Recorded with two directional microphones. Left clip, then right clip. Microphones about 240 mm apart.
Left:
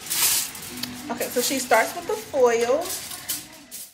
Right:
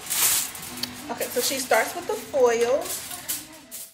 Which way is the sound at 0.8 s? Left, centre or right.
Centre.